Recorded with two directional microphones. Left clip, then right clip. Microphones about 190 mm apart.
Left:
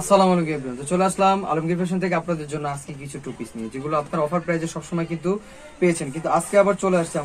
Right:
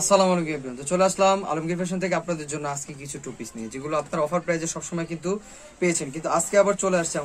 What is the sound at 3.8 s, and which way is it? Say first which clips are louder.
Speech: left 2 dB; 5° right (ahead or behind).